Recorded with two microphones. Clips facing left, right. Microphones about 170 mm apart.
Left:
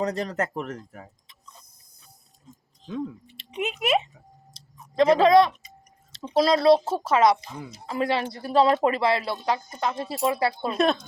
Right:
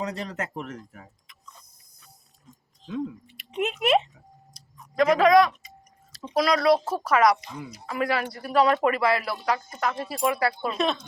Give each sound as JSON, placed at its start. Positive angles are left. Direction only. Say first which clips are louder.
{"t": 0.0, "sound": "speech", "louder": "left 5 dB", "side_deg": 40}
{"t": 2.8, "sound": "speech", "louder": "right 1 dB", "side_deg": 35}
{"t": 3.5, "sound": "speech", "louder": "right 2 dB", "side_deg": 0}
{"t": 4.5, "sound": "clicking", "louder": "left 2 dB", "side_deg": 25}
{"t": 6.3, "sound": "a woman's voice", "louder": "left 3 dB", "side_deg": 25}
{"t": 10.8, "sound": "speech", "louder": "left 6 dB", "side_deg": 45}